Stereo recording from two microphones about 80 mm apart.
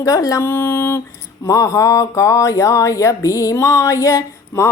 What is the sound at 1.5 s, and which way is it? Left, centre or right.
Speech, left.